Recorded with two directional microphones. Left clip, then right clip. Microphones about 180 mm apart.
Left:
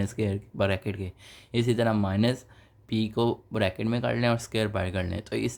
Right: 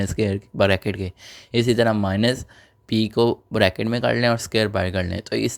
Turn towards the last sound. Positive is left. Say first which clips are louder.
# right 7 dB
turn(degrees=-30)  # may be behind; listen again after turning